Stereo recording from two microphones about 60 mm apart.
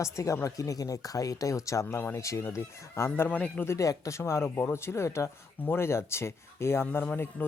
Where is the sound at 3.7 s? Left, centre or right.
Left.